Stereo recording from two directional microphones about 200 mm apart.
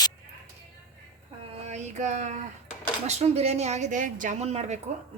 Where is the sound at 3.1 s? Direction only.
30° right (ahead or behind).